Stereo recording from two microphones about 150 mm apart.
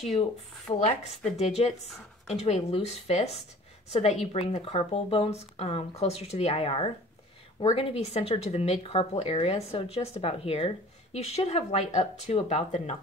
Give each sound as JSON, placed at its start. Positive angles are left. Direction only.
{"t": 0.7, "sound": "speech", "side_deg": 45}
{"t": 8.0, "sound": "speech", "side_deg": 45}